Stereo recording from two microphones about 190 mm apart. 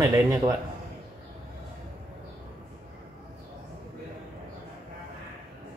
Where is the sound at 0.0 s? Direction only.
15° right (ahead or behind).